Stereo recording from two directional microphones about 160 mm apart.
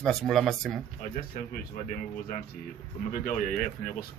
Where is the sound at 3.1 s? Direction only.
60° left (ahead or behind).